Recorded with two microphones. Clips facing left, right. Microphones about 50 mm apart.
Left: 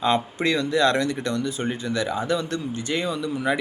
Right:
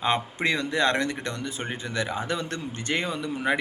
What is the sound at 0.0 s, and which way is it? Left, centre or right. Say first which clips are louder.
Speech: left 3 dB; right.